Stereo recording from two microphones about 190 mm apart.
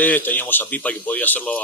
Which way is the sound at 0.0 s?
10° left (ahead or behind).